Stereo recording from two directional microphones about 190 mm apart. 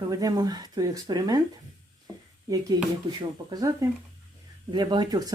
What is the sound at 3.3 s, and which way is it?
Speech, 20° right (ahead or behind).